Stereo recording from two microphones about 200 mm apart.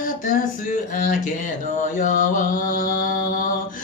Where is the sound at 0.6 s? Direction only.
40° left (ahead or behind).